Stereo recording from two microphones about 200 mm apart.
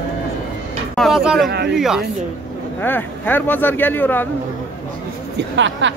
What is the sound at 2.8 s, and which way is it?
A man's voice, 10° left (ahead or behind).